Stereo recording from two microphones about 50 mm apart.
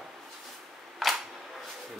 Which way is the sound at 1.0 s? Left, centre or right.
Centre.